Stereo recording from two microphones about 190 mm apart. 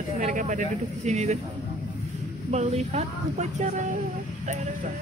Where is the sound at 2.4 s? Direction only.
35° right (ahead or behind).